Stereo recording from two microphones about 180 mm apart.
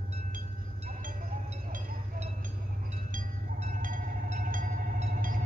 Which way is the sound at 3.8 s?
50° right (ahead or behind).